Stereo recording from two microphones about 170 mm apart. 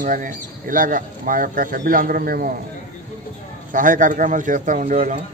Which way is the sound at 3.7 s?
50° right (ahead or behind).